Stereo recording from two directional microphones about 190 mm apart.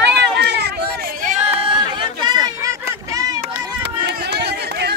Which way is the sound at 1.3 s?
30° right (ahead or behind).